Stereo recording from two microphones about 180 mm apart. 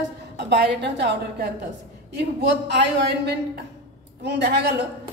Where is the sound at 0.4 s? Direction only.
65° right (ahead or behind).